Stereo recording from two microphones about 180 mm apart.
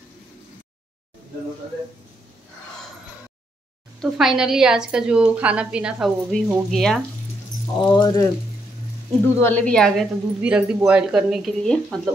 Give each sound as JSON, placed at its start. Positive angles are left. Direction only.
{"t": 4.0, "sound": "a woman's voice", "side_deg": 0}
{"t": 7.8, "sound": "speech", "side_deg": 25}
{"t": 9.4, "sound": "a woman's voice", "side_deg": 10}